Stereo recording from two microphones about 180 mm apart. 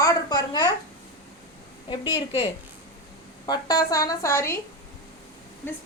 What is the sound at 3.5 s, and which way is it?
A woman's voice, 20° left (ahead or behind).